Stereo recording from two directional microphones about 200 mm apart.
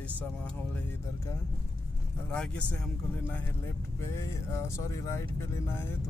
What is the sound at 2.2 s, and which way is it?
Speech, 5° left (ahead or behind).